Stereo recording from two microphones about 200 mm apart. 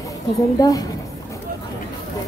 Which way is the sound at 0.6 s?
20° left (ahead or behind).